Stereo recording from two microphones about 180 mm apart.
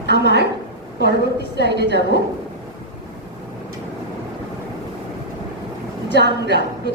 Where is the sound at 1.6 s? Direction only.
70° right (ahead or behind).